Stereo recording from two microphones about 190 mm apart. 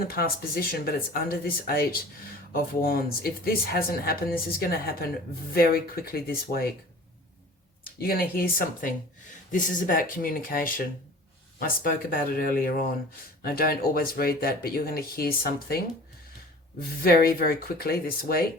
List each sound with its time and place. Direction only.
0.1 s speech: 50° left (ahead or behind)
7.9 s speech: 50° left (ahead or behind)
17.0 s speech: 50° left (ahead or behind)